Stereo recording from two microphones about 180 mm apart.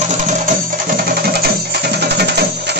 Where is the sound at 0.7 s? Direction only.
60° right (ahead or behind).